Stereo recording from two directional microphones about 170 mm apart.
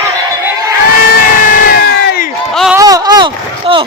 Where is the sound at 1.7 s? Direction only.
60° left (ahead or behind).